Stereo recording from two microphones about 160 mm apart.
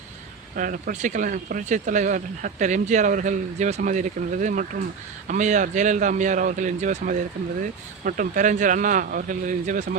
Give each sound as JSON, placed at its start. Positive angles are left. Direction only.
{"t": 0.5, "sound": "speech", "side_deg": -60}